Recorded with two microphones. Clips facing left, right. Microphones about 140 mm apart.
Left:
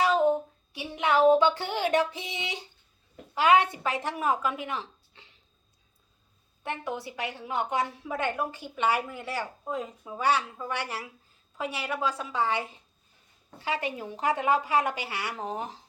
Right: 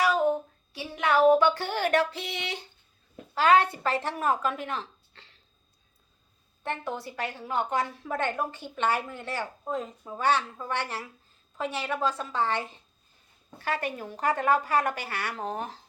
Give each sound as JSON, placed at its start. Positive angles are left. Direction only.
{"t": 0.0, "sound": "a sound", "side_deg": 20}
{"t": 3.3, "sound": "a woman's voice", "side_deg": 15}
{"t": 6.6, "sound": "a woman's voice", "side_deg": 10}